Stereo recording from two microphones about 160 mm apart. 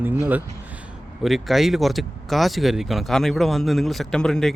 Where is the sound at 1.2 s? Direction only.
Centre (ahead or behind).